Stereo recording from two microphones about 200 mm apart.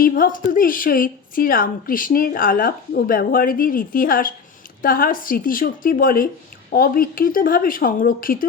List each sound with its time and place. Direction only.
0.0 s a woman's voice: 45° left (ahead or behind)